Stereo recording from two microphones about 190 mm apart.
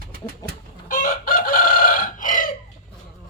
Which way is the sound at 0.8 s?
45° left (ahead or behind).